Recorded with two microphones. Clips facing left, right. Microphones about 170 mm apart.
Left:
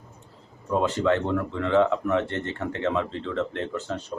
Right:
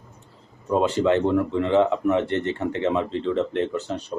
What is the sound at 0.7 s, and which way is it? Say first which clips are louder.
Speech: right 3 dB; 15° right (ahead or behind).